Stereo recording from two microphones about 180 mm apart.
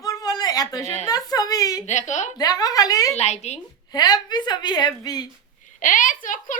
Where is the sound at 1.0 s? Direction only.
20° left (ahead or behind).